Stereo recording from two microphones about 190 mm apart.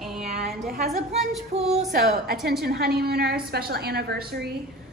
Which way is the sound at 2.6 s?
55° right (ahead or behind).